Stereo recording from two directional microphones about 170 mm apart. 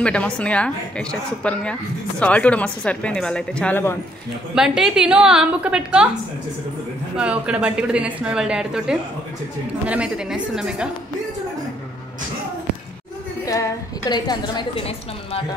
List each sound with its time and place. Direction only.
0.0 s a woman's voice: 5° left (ahead or behind)
4.6 s a woman's voice: 5° right (ahead or behind)
7.2 s a woman's voice: 5° right (ahead or behind)
13.5 s a woman's voice: 20° left (ahead or behind)